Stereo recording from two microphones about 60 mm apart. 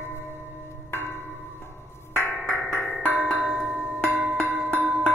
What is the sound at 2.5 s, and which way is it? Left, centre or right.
Music, left.